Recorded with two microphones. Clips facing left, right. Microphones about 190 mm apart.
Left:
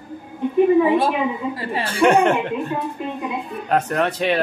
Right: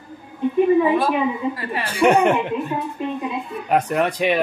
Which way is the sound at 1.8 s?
10° right (ahead or behind).